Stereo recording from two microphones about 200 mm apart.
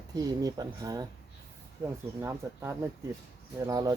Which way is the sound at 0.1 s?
20° right (ahead or behind).